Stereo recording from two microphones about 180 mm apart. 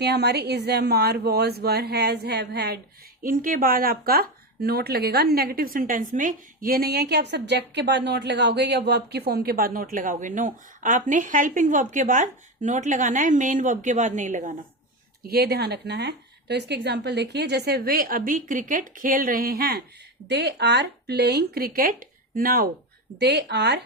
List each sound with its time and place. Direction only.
0.0 s a woman's voice: 65° right (ahead or behind)
3.2 s speech: 50° right (ahead or behind)
15.3 s a woman's voice: 60° right (ahead or behind)
23.2 s speech: 70° right (ahead or behind)